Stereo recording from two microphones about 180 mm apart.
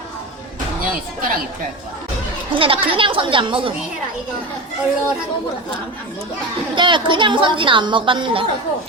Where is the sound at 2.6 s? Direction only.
30° right (ahead or behind).